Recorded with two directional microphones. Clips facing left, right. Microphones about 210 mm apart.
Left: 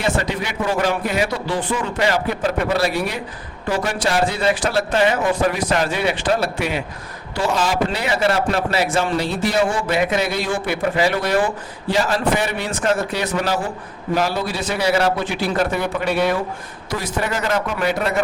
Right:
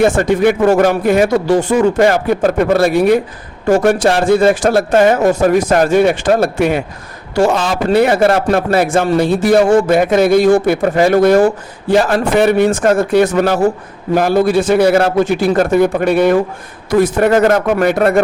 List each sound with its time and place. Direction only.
0.0 s speech: 50° right (ahead or behind)